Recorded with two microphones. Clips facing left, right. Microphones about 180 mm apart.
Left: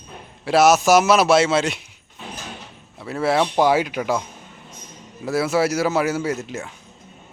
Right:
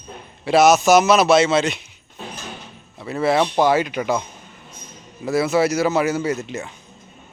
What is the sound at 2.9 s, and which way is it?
Speech, 5° left (ahead or behind).